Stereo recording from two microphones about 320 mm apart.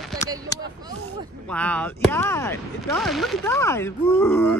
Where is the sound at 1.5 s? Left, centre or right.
Centre.